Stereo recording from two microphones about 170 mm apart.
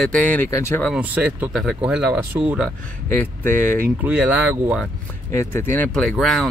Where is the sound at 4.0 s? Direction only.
10° right (ahead or behind).